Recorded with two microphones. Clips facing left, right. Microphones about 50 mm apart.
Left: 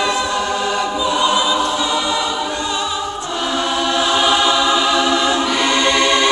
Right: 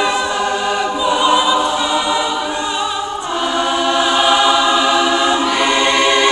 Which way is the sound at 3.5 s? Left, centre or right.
Centre.